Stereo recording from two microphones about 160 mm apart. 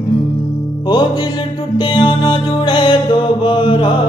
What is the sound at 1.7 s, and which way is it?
Music, 30° left (ahead or behind).